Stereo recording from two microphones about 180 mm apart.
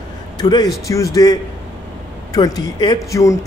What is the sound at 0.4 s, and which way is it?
A man's voice, 25° left (ahead or behind).